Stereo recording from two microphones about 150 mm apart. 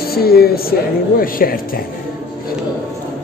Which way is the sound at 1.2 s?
75° left (ahead or behind).